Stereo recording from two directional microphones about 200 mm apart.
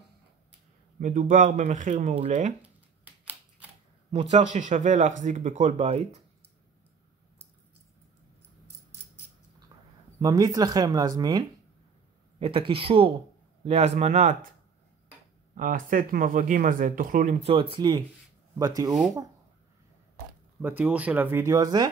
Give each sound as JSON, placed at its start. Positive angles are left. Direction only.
{"t": 0.9, "sound": "speech", "side_deg": -45}
{"t": 4.1, "sound": "speech", "side_deg": -30}
{"t": 10.2, "sound": "speech", "side_deg": -15}
{"t": 15.5, "sound": "speech", "side_deg": -40}
{"t": 20.6, "sound": "speech", "side_deg": -10}